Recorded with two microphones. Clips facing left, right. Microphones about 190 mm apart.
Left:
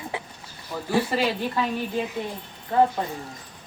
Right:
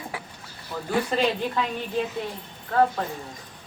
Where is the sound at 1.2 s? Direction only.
5° left (ahead or behind).